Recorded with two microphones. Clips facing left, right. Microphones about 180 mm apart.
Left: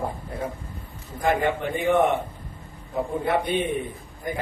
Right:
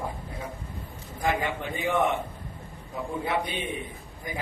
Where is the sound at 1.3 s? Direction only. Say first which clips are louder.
Left 5 dB; 55° left (ahead or behind).